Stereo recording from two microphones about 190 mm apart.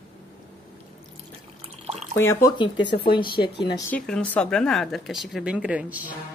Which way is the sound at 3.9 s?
5° left (ahead or behind).